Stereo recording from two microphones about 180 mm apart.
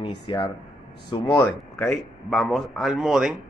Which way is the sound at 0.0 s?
20° left (ahead or behind).